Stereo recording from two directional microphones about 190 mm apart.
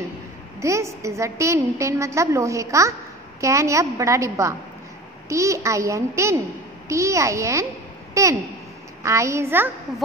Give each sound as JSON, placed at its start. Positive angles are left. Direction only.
{"t": 0.6, "sound": "a woman's voice", "side_deg": -15}